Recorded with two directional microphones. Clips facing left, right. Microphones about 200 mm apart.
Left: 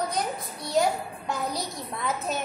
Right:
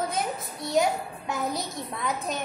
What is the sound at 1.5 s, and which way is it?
Speech, 20° right (ahead or behind).